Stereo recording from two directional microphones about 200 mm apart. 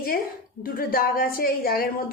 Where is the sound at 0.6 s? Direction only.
45° left (ahead or behind).